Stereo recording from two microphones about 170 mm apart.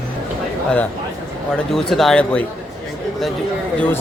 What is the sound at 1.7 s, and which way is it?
Speech, centre (ahead or behind).